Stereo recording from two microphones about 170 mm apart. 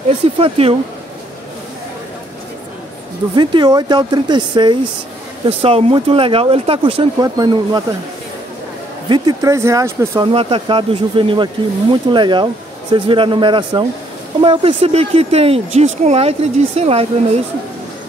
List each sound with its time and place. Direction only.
0.4 s speech: 35° right (ahead or behind)
3.3 s speech: 25° right (ahead or behind)
9.1 s speech: 25° right (ahead or behind)
10.2 s speech: 30° right (ahead or behind)